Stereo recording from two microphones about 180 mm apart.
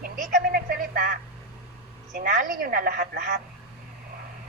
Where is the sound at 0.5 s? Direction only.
55° right (ahead or behind).